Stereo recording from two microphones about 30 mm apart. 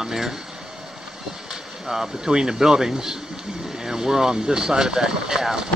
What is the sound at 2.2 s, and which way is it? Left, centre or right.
Speech, right.